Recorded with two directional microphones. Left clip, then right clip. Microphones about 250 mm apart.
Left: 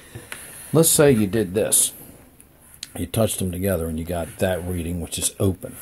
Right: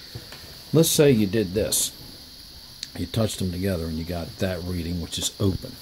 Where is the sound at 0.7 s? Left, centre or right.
Centre.